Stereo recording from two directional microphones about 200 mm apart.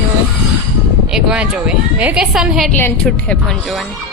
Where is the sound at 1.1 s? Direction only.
5° right (ahead or behind).